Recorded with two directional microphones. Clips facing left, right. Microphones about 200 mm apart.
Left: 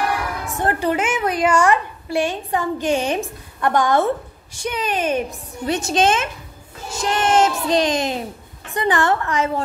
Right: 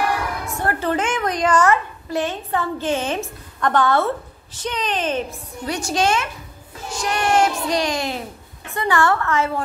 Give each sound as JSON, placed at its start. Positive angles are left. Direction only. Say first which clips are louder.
{"t": 0.6, "sound": "a woman's voice", "louder": "left 2 dB", "side_deg": 15}
{"t": 5.7, "sound": "speech", "louder": "left 3 dB", "side_deg": 20}